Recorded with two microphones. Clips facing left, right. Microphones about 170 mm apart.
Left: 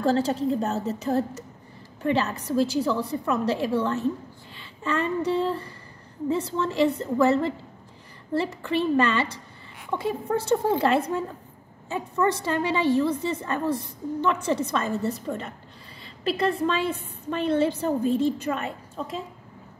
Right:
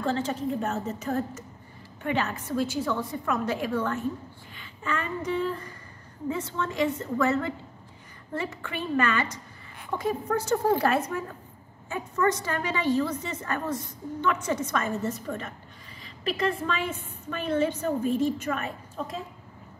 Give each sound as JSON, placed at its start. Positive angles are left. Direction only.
{"t": 0.0, "sound": "a woman's voice", "side_deg": 35}
{"t": 4.6, "sound": "a sound", "side_deg": 30}
{"t": 6.3, "sound": "a woman's voice", "side_deg": 30}